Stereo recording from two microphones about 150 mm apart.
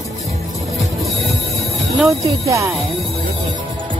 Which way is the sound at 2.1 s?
20° right (ahead or behind).